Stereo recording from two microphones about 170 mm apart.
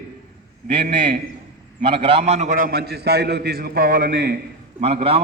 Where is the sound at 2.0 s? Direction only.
35° right (ahead or behind); by 4.3 s 70° right (ahead or behind).